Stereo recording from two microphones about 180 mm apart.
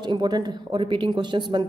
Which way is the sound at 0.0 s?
25° right (ahead or behind).